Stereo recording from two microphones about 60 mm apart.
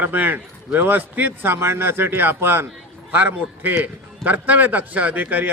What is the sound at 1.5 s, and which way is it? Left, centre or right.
A man's voice, right.